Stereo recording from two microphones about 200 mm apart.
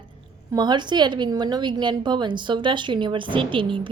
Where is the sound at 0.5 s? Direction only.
20° right (ahead or behind).